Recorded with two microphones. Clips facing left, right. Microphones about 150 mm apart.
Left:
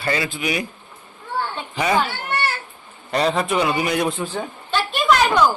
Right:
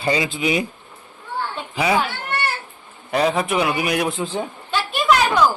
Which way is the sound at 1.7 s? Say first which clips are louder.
Even; 10° right (ahead or behind).